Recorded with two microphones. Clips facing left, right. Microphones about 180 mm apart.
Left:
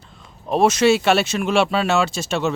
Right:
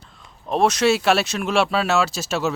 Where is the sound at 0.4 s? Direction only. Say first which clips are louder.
Left 2 dB; centre (ahead or behind).